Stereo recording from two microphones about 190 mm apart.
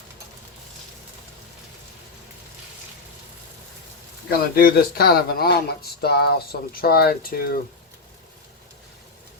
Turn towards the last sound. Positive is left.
turn(degrees=50)  # may be behind; listen again after turning